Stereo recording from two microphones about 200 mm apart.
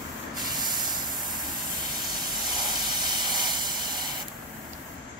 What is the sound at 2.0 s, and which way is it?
Steam, 20° right (ahead or behind).